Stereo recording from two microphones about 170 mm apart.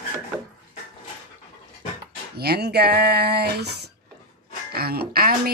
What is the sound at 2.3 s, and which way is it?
Speech, 65° right (ahead or behind).